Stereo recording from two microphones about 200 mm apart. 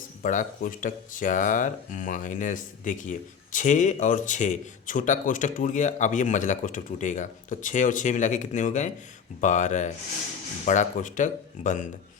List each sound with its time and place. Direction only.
0.2 s speech: 40° left (ahead or behind)